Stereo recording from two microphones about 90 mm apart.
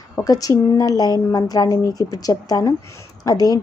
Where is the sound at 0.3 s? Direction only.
40° left (ahead or behind).